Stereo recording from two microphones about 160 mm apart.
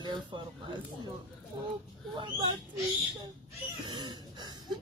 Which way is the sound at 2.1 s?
30° right (ahead or behind).